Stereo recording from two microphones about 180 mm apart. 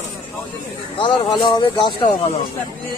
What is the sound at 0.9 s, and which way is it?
Speech, 25° left (ahead or behind).